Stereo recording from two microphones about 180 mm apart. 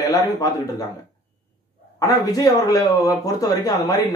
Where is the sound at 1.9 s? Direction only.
20° left (ahead or behind).